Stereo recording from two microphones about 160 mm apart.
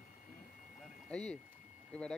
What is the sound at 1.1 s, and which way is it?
Speech, 5° left (ahead or behind).